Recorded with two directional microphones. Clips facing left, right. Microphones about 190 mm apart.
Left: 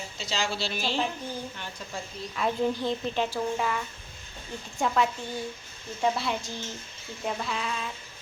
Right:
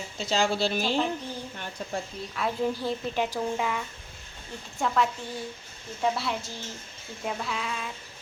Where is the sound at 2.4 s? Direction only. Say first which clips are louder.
Left 1 dB; centre (ahead or behind).